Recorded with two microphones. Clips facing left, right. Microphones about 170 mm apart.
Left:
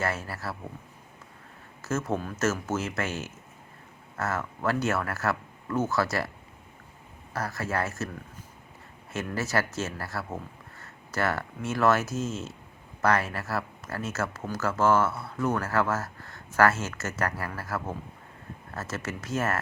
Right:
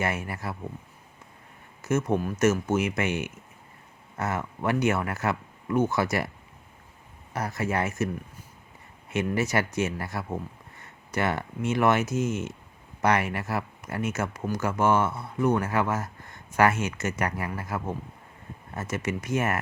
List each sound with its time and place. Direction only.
0.0 s speech: 20° right (ahead or behind)
1.8 s speech: 15° right (ahead or behind)
7.3 s speech: 20° right (ahead or behind)